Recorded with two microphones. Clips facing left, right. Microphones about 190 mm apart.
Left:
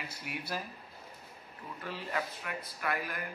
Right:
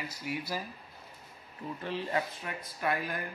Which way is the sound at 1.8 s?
25° right (ahead or behind).